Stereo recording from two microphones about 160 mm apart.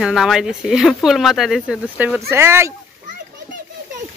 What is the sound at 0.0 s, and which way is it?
Speech, centre (ahead or behind).